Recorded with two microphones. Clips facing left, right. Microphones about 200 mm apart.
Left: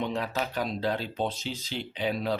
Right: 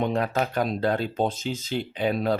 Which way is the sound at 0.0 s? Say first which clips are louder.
Right 6 dB; 50° right (ahead or behind).